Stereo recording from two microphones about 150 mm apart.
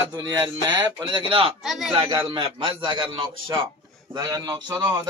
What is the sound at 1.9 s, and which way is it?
A man's voice, 30° right (ahead or behind).